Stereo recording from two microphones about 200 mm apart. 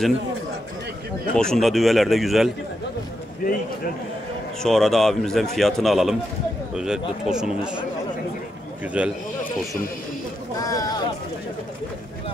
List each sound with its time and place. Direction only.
1.3 s speech: 5° left (ahead or behind)
4.6 s speech: centre (ahead or behind)
9.0 s speech: 5° right (ahead or behind)
10.6 s a sound: 15° left (ahead or behind)